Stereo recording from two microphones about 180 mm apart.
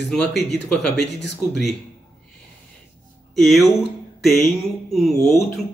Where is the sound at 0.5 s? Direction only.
5° left (ahead or behind).